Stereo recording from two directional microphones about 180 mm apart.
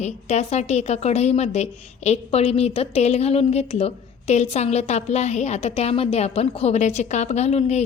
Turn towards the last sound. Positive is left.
turn(degrees=35)  # may be behind; listen again after turning